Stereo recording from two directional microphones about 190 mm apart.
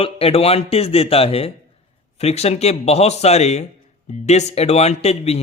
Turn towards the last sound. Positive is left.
turn(degrees=35)  # may be behind; listen again after turning